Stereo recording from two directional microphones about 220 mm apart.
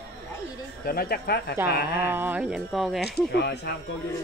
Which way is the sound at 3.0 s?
50° left (ahead or behind).